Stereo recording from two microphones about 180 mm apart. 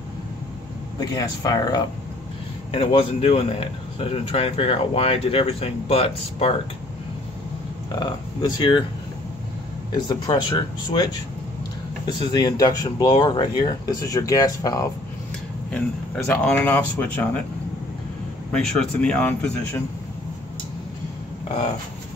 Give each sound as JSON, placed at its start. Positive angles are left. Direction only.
{"t": 0.9, "sound": "speech", "side_deg": 20}
{"t": 8.0, "sound": "speech", "side_deg": 25}
{"t": 10.0, "sound": "speech", "side_deg": 25}
{"t": 12.3, "sound": "speech", "side_deg": 20}
{"t": 16.3, "sound": "speech", "side_deg": 10}
{"t": 18.5, "sound": "speech", "side_deg": 5}